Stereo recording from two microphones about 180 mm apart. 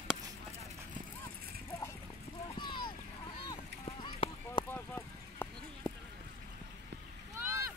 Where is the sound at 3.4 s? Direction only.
30° left (ahead or behind).